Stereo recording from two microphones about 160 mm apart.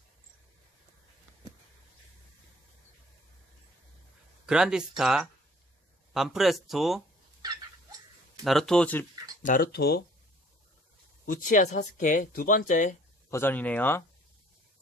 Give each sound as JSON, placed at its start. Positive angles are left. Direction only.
{"t": 4.5, "sound": "speech", "side_deg": -5}
{"t": 8.5, "sound": "speech", "side_deg": 5}
{"t": 9.4, "sound": "speech", "side_deg": 65}
{"t": 11.2, "sound": "speech", "side_deg": 55}
{"t": 13.3, "sound": "speech", "side_deg": 15}